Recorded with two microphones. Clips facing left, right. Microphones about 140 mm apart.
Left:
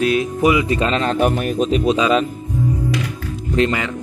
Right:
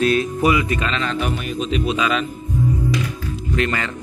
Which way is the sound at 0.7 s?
35° left (ahead or behind).